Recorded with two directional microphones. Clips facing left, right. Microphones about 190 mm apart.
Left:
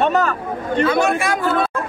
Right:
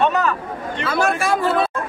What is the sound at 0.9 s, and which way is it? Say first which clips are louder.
Speech: right 2 dB; centre (ahead or behind).